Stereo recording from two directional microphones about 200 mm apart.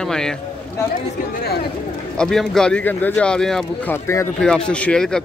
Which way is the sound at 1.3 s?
55° left (ahead or behind).